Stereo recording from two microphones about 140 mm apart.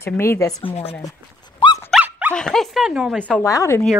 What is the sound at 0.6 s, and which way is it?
Speech, 45° left (ahead or behind).